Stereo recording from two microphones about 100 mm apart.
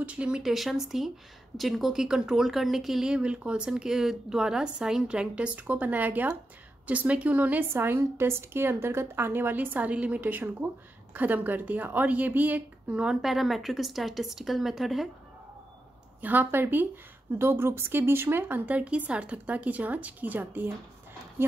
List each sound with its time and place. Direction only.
0.0 s a woman's voice: 10° right (ahead or behind)
16.2 s a woman's voice: 15° right (ahead or behind)